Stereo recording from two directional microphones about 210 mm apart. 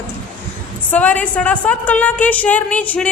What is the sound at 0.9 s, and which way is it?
A woman's voice, 5° left (ahead or behind).